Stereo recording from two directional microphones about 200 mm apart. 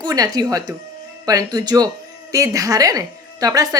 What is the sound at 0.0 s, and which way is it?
A woman's voice, 20° right (ahead or behind).